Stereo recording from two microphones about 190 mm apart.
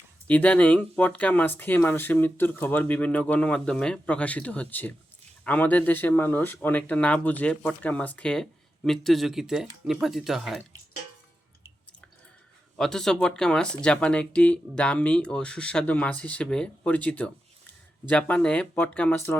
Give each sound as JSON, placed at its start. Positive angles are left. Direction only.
{"t": 0.3, "sound": "speech", "side_deg": 5}
{"t": 12.7, "sound": "speech", "side_deg": 5}